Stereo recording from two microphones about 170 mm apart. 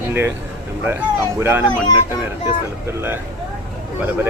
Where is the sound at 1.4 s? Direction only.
15° right (ahead or behind).